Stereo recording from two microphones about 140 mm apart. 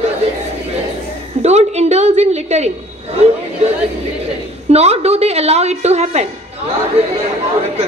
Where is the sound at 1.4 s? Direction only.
50° right (ahead or behind).